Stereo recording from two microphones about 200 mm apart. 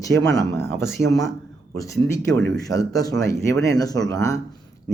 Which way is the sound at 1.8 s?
15° left (ahead or behind).